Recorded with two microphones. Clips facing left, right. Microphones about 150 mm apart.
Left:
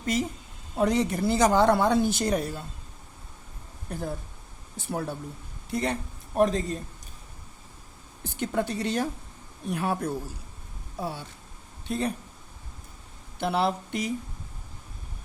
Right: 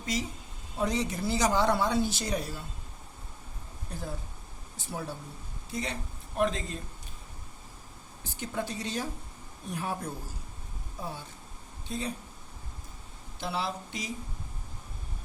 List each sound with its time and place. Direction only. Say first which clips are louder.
0.0 s a woman's voice: left 6 dB; 55° left (ahead or behind)
3.9 s speech: left 6 dB; 55° left (ahead or behind); by 6.7 s 40° left (ahead or behind)
8.2 s a woman's voice: left 7 dB; 60° left (ahead or behind)
11.0 s a woman's voice: left 5 dB; 70° left (ahead or behind)
11.9 s speech: left 6 dB; 60° left (ahead or behind)
13.4 s speech: left 8 dB; 60° left (ahead or behind)